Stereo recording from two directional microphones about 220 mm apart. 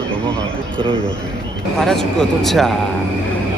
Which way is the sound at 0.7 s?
25° right (ahead or behind).